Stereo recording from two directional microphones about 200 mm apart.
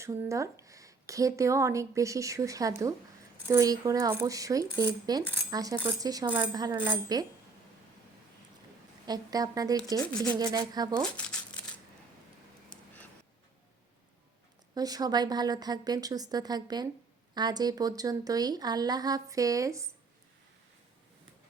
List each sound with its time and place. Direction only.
0.0 s speech: 15° right (ahead or behind)
9.0 s speech: 20° right (ahead or behind)
11.0 s speech: 5° left (ahead or behind)
14.8 s speech: 20° right (ahead or behind)